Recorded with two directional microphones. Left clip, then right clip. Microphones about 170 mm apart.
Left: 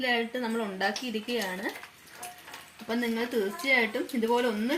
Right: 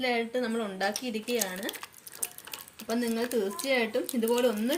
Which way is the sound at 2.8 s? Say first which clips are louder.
Even; 15° left (ahead or behind).